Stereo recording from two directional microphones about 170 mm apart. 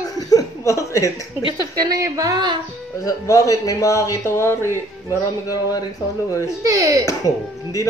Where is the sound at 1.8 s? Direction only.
20° right (ahead or behind).